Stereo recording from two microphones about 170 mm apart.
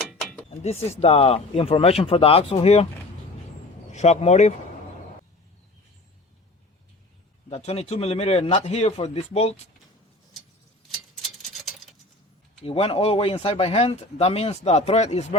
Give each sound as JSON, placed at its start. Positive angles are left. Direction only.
{"t": 0.1, "sound": "a sound", "side_deg": 0}
{"t": 0.6, "sound": "speech", "side_deg": 40}
{"t": 3.9, "sound": "speech", "side_deg": 40}
{"t": 7.5, "sound": "speech", "side_deg": 40}
{"t": 10.9, "sound": "tick-tock", "side_deg": 0}
{"t": 12.6, "sound": "speech", "side_deg": 35}